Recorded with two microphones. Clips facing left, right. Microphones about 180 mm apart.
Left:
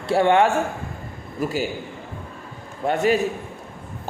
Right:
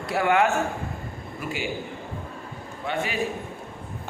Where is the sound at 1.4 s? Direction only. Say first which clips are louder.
Left 8 dB; 40° left (ahead or behind).